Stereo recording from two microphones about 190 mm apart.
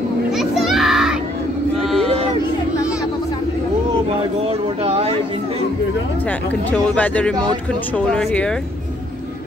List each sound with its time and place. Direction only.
0.4 s children playing: centre (ahead or behind)
4.8 s chatter: 30° right (ahead or behind)
6.7 s speech: 5° left (ahead or behind)